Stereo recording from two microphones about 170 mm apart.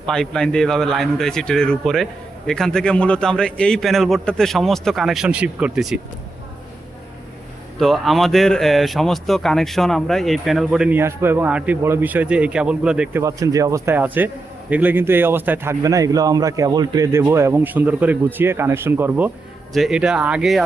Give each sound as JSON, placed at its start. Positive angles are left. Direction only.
{"t": 0.0, "sound": "speech", "side_deg": 5}
{"t": 7.8, "sound": "speech", "side_deg": 0}
{"t": 13.2, "sound": "a man's voice", "side_deg": -20}